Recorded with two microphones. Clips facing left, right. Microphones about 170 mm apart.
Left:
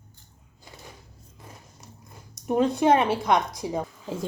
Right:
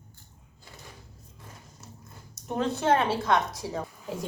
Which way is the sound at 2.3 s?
15° left (ahead or behind).